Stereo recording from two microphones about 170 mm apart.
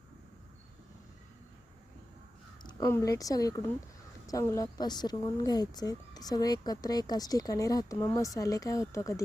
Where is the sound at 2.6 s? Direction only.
20° left (ahead or behind).